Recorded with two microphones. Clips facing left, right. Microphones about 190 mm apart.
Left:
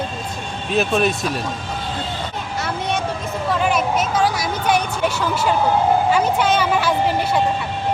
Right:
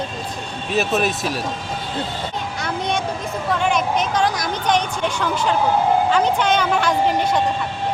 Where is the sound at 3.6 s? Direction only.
5° left (ahead or behind).